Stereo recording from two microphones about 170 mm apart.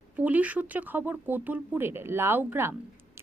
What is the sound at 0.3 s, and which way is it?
A woman's voice, 10° right (ahead or behind).